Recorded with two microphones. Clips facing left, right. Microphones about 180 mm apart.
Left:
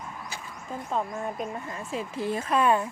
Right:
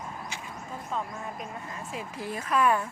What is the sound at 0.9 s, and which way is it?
Speech, 35° left (ahead or behind).